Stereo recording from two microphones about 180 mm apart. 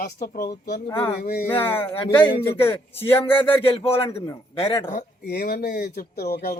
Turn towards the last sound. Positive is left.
turn(degrees=60)  # may be behind; listen again after turning